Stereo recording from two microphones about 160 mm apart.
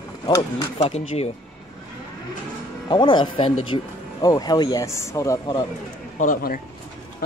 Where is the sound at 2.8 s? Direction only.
30° left (ahead or behind).